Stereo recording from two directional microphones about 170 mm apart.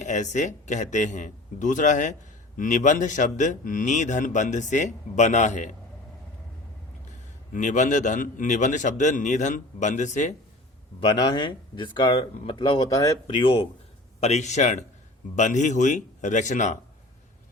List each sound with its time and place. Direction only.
0.0 s speech: 45° left (ahead or behind)
7.5 s speech: 45° left (ahead or behind)
11.0 s speech: 30° left (ahead or behind); by 16.7 s 45° left (ahead or behind)